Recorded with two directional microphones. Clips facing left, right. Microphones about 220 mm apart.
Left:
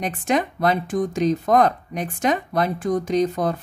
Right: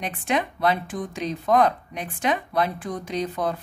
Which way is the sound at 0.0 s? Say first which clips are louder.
Left 4 dB; 45° left (ahead or behind).